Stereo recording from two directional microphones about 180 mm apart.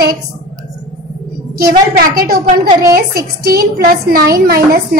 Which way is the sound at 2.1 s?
55° right (ahead or behind).